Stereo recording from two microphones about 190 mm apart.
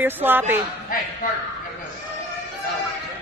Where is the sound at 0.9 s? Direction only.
50° left (ahead or behind).